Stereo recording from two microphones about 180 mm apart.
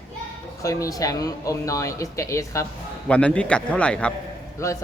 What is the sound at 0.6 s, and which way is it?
Speech, 15° left (ahead or behind).